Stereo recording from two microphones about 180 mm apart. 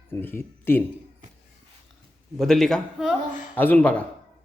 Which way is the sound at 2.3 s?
Centre (ahead or behind).